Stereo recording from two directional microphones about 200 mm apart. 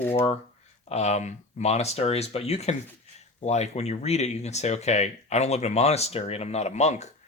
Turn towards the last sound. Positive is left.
turn(degrees=35)  # may be behind; listen again after turning